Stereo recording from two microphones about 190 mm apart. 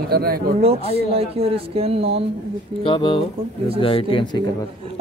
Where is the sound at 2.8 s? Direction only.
25° left (ahead or behind).